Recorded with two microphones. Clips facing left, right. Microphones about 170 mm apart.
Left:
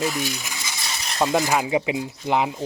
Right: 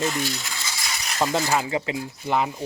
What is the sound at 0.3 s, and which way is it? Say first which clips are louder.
Coin: even; 15° left (ahead or behind).